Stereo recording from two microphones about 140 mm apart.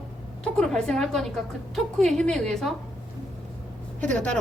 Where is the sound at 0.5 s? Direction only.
5° left (ahead or behind).